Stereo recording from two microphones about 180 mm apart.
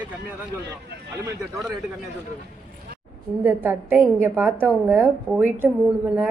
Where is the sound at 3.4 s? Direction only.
10° right (ahead or behind).